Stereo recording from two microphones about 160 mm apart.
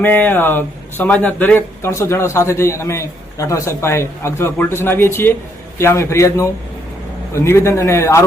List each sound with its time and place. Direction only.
0.0 s speech: 10° left (ahead or behind)